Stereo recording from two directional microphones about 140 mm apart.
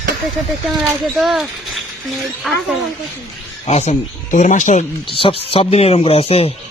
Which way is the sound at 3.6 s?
50° left (ahead or behind).